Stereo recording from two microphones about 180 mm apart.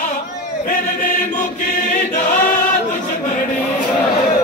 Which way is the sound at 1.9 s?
50° left (ahead or behind).